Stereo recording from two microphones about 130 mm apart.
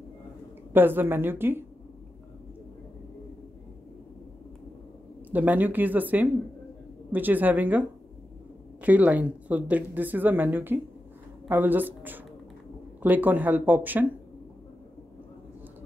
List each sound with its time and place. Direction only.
0.7 s speech: 15° right (ahead or behind)
5.3 s speech: 15° right (ahead or behind)
8.8 s speech: 10° right (ahead or behind)